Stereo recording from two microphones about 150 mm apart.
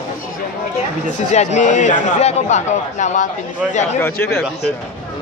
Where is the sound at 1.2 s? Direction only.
50° left (ahead or behind).